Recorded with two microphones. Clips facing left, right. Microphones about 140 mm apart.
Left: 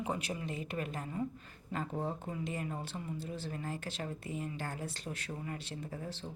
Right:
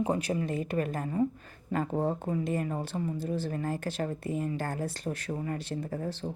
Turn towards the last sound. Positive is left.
turn(degrees=-50)  # may be behind; listen again after turning